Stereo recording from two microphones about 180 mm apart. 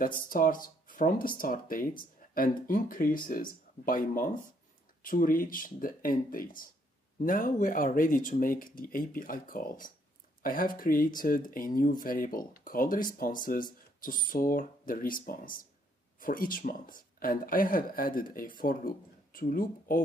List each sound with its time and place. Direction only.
0.0 s speech: 50° left (ahead or behind)